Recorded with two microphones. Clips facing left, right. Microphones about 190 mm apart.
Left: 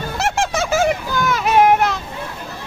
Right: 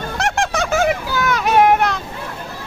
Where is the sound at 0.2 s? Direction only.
Centre (ahead or behind).